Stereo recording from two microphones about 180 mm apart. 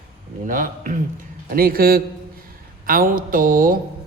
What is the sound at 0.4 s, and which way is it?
Speech, 50° right (ahead or behind).